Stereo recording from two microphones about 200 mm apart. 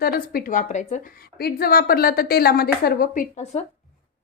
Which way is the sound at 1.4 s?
50° left (ahead or behind).